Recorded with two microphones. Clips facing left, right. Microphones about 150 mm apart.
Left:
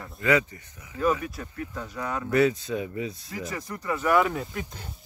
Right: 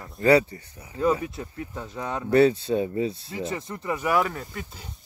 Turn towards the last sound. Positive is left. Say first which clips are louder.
# left 3 dB
turn(degrees=5)  # may be behind; listen again after turning